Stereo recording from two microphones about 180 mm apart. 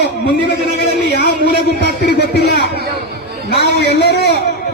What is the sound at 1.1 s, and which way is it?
A man's voice, 70° left (ahead or behind).